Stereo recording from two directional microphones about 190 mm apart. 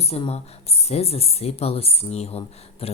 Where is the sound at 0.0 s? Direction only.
30° left (ahead or behind).